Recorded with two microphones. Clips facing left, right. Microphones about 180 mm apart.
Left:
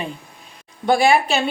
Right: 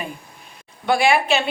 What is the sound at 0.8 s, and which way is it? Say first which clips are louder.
Speech: left 2 dB; 35° left (ahead or behind).